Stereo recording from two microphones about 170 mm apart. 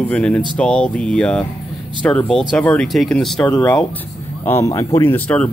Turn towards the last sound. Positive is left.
turn(degrees=10)  # may be behind; listen again after turning